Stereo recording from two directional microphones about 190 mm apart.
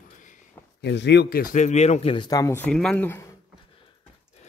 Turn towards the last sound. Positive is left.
turn(degrees=15)  # may be behind; listen again after turning